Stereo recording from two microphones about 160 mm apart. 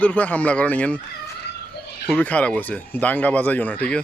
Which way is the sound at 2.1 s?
10° left (ahead or behind).